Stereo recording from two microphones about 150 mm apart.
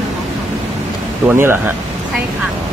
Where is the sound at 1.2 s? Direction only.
15° right (ahead or behind).